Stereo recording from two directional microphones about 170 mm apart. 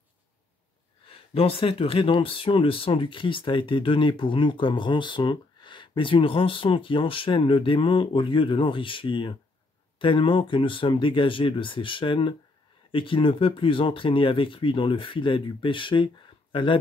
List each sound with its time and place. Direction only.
1.0 s speech: 30° left (ahead or behind)